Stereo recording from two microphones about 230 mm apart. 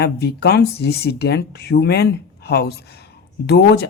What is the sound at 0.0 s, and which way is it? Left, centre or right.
Speech, left.